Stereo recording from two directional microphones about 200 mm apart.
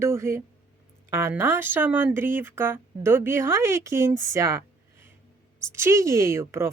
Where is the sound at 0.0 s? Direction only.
15° right (ahead or behind).